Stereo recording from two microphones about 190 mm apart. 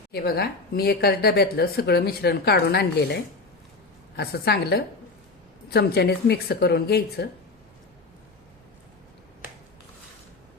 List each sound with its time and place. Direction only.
0.1 s a woman's voice: 55° left (ahead or behind)
4.2 s a woman's voice: 55° left (ahead or behind)